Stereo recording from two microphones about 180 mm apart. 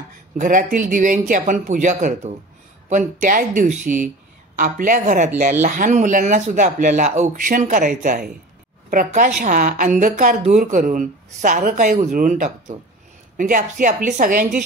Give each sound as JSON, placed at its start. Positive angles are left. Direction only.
{"t": 0.4, "sound": "a woman's voice", "side_deg": -45}